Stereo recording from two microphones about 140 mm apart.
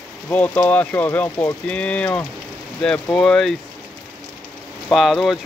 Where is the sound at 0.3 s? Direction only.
10° left (ahead or behind).